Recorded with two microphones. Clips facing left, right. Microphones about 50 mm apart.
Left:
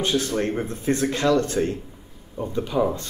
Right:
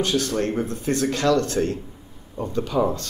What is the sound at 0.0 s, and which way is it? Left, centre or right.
A man's voice, left.